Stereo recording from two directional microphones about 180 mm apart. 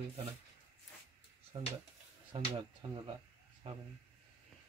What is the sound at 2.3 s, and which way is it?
Speech, 30° right (ahead or behind).